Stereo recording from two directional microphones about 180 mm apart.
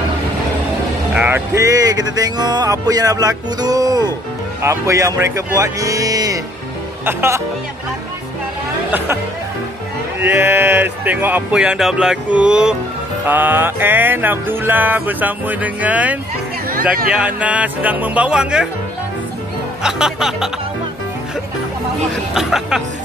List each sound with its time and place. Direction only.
1.1 s speech: 10° right (ahead or behind)
4.6 s music: 15° right (ahead or behind)
8.9 s music: 10° right (ahead or behind)
10.2 s music: 10° right (ahead or behind)
19.8 s speech: 5° right (ahead or behind)
22.3 s speech: centre (ahead or behind)